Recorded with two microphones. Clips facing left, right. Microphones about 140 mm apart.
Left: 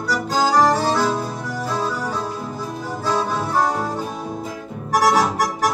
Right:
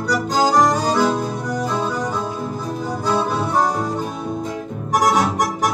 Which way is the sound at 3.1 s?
15° right (ahead or behind).